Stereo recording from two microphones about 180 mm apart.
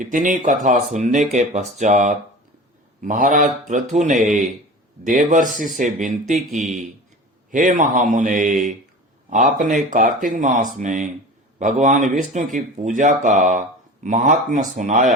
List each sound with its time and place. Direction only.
0.0 s speech: 45° right (ahead or behind)